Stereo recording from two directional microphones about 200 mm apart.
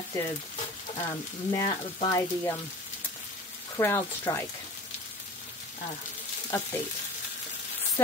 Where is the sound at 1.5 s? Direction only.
20° left (ahead or behind).